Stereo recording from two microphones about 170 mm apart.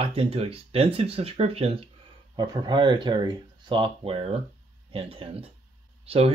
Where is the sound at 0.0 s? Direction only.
35° right (ahead or behind).